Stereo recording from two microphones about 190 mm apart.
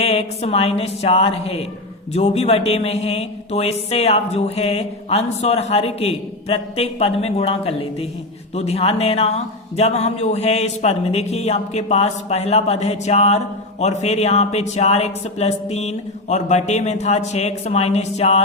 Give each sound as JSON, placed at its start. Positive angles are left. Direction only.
{"t": 0.0, "sound": "speech", "side_deg": 30}